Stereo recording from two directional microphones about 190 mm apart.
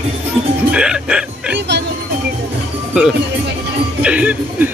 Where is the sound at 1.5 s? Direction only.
60° right (ahead or behind).